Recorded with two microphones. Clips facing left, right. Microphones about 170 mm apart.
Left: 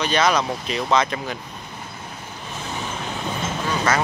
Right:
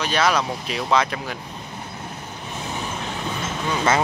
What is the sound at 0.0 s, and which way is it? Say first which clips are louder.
Speech: left 1 dB; 5° right (ahead or behind).